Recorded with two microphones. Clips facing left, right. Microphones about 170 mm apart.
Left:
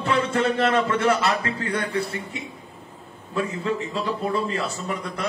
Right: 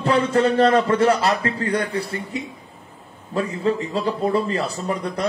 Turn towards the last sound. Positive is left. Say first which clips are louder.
# right 5 dB
turn(degrees=-35)  # may be behind; listen again after turning